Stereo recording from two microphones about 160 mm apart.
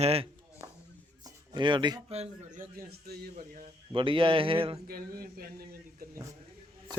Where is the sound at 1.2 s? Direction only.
30° right (ahead or behind).